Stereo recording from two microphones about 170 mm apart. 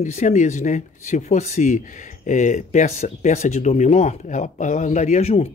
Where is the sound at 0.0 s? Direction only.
45° left (ahead or behind).